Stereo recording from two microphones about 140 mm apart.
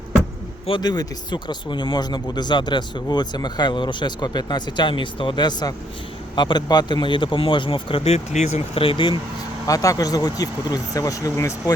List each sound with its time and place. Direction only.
0.7 s speech: 30° left (ahead or behind)
9.6 s speech: 25° left (ahead or behind)